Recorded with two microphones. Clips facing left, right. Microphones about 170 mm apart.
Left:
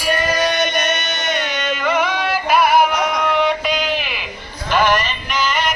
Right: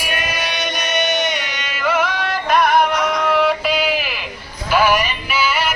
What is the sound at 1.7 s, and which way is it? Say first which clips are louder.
Music: even; 5° right (ahead or behind).